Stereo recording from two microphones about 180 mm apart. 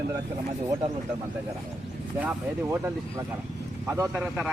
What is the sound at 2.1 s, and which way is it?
Speech, 10° right (ahead or behind).